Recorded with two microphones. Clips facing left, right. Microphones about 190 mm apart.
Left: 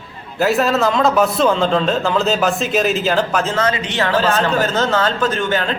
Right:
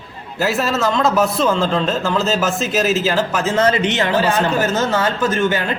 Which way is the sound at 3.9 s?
15° right (ahead or behind).